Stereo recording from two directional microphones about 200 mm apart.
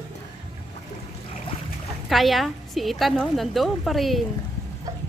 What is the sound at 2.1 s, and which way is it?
A woman's voice, centre (ahead or behind).